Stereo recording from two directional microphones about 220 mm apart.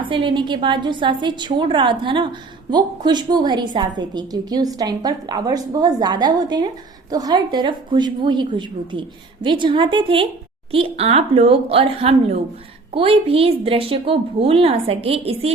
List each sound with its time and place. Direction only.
0.0 s a woman's voice: 20° right (ahead or behind)